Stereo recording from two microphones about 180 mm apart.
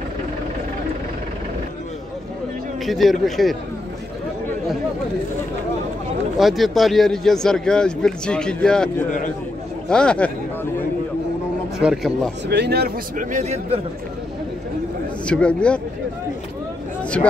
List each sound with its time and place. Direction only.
2.8 s speech: centre (ahead or behind)
6.3 s speech: centre (ahead or behind)
11.8 s speech: centre (ahead or behind)
12.4 s speech: 65° right (ahead or behind); by 13.7 s 40° right (ahead or behind)
15.2 s speech: 5° left (ahead or behind)